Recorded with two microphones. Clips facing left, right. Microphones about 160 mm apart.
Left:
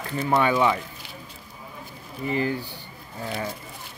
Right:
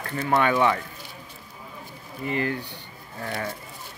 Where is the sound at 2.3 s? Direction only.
30° left (ahead or behind).